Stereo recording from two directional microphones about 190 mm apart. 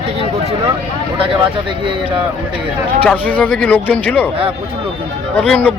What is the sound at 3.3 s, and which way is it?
Speech, 5° left (ahead or behind).